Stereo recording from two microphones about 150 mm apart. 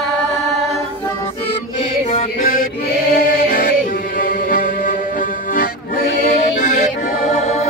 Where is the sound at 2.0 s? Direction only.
55° left (ahead or behind).